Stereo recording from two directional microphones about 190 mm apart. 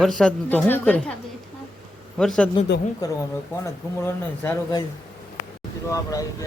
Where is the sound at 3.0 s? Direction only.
20° left (ahead or behind).